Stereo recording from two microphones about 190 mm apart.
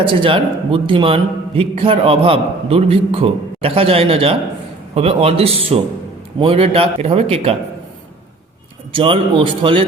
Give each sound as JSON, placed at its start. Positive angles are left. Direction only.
{"t": 0.0, "sound": "a man's voice", "side_deg": -25}
{"t": 8.9, "sound": "a man's voice", "side_deg": -25}